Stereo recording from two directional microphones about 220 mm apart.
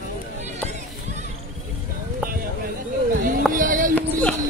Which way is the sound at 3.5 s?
35° right (ahead or behind).